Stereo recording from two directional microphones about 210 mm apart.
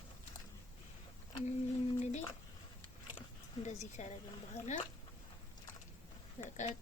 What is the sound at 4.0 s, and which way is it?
Speech, 35° left (ahead or behind).